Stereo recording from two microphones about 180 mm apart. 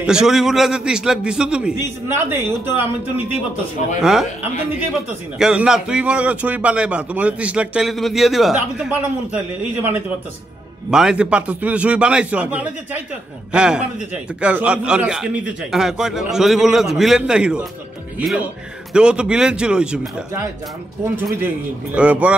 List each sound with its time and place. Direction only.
0.0 s a man's voice: 5° right (ahead or behind)
18.9 s a man's voice: 5° right (ahead or behind)
21.9 s a man's voice: 5° right (ahead or behind)